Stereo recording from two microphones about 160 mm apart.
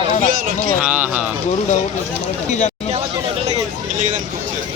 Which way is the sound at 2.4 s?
45° left (ahead or behind).